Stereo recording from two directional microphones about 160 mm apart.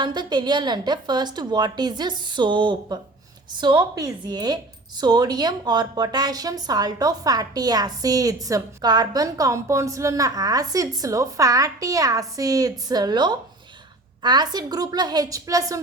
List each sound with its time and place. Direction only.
0.0 s speech: 30° right (ahead or behind)